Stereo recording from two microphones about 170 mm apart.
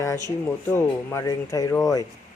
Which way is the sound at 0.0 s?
20° left (ahead or behind).